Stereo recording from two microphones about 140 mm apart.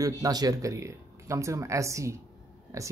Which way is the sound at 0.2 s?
25° right (ahead or behind).